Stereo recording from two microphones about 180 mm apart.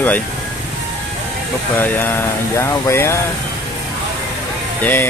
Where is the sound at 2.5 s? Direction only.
15° left (ahead or behind).